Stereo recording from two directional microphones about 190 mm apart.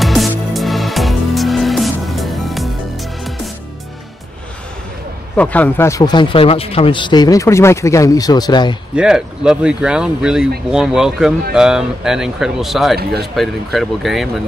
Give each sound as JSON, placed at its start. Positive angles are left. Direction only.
{"t": 0.0, "sound": "music", "side_deg": 0}
{"t": 5.3, "sound": "speech", "side_deg": 10}
{"t": 8.9, "sound": "speech", "side_deg": -5}